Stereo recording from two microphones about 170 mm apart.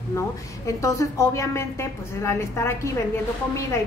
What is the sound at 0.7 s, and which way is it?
A woman's voice, 20° left (ahead or behind).